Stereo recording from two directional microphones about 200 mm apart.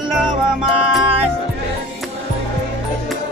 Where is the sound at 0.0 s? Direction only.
5° right (ahead or behind).